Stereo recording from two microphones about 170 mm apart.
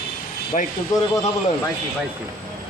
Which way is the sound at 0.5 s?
40° left (ahead or behind).